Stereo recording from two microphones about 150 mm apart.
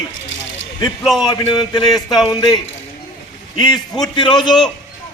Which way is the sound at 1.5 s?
30° left (ahead or behind).